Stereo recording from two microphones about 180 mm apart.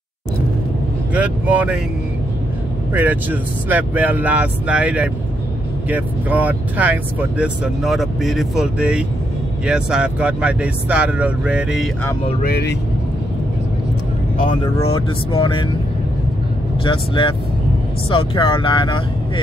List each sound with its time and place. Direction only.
1.1 s speech: 5° right (ahead or behind)
2.9 s speech: 10° right (ahead or behind)
12.4 s speech: 60° left (ahead or behind)
14.4 s speech: 30° left (ahead or behind)
16.8 s speech: 30° left (ahead or behind)